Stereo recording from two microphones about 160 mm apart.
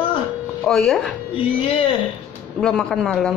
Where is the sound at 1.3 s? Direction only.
35° left (ahead or behind).